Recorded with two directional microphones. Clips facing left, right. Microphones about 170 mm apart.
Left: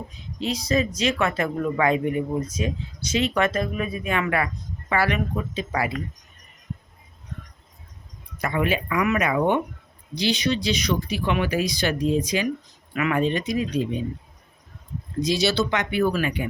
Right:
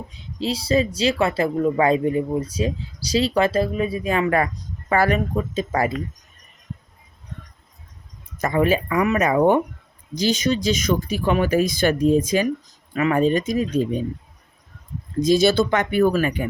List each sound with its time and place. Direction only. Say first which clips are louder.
0.1 s speech: right 3 dB; 30° right (ahead or behind)
8.4 s speech: right 5 dB; 40° right (ahead or behind)
12.9 s speech: right 4 dB; 35° right (ahead or behind)
15.2 s speech: right 6 dB; 50° right (ahead or behind)